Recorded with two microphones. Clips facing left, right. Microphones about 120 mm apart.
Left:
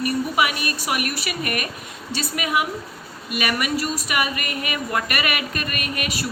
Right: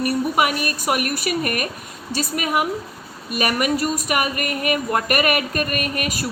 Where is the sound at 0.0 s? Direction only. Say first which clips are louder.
Right 2 dB; 45° right (ahead or behind).